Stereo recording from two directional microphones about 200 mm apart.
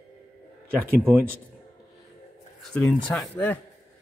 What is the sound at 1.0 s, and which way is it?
Speech, 10° right (ahead or behind).